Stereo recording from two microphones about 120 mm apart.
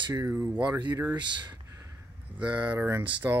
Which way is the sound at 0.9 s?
35° right (ahead or behind).